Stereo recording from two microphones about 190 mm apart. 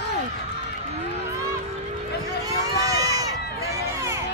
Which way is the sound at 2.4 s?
20° right (ahead or behind).